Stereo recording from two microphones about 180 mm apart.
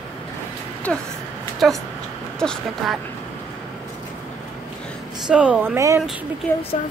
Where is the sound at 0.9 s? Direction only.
5° left (ahead or behind).